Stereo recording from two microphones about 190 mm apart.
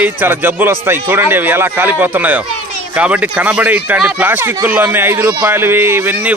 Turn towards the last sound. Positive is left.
turn(degrees=-10)  # may be behind; listen again after turning